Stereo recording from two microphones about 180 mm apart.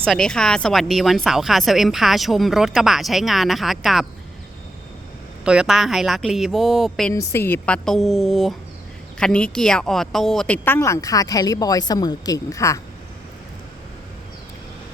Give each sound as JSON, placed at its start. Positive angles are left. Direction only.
{"t": 0.0, "sound": "speech", "side_deg": 5}
{"t": 5.5, "sound": "speech", "side_deg": -5}
{"t": 7.1, "sound": "speech", "side_deg": 10}